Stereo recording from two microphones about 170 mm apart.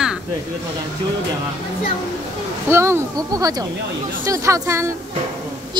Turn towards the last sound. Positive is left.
turn(degrees=-15)  # may be behind; listen again after turning